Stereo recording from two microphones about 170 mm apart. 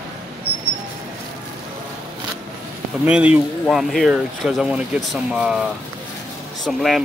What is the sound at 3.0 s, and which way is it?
Speech, 5° right (ahead or behind).